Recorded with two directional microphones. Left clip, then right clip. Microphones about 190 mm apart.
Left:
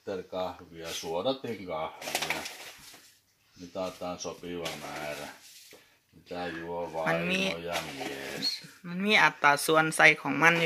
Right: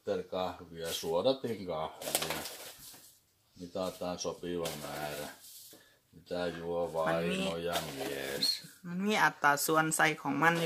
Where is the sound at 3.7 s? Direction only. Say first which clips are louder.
Left 2 dB; 35° right (ahead or behind).